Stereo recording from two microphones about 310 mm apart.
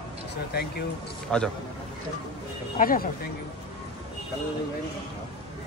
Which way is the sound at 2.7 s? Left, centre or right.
Left.